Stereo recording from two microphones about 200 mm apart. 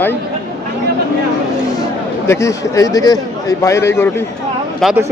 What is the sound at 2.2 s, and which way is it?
A man's voice, 15° left (ahead or behind).